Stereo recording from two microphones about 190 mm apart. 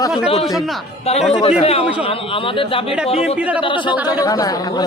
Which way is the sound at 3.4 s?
5° right (ahead or behind).